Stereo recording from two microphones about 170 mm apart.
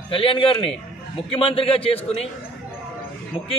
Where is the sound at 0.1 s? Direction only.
30° left (ahead or behind).